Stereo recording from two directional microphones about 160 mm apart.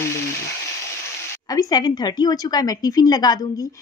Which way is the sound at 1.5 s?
25° left (ahead or behind).